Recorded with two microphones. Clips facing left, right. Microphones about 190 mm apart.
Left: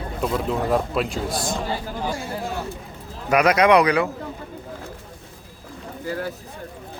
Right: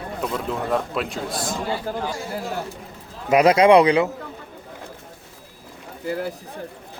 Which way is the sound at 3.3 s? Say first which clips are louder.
Right 3 dB; 25° right (ahead or behind).